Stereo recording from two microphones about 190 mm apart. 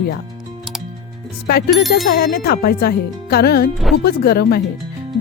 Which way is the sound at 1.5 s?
55° left (ahead or behind).